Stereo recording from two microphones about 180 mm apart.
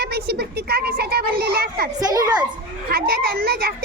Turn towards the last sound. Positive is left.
turn(degrees=-60)  # may be behind; listen again after turning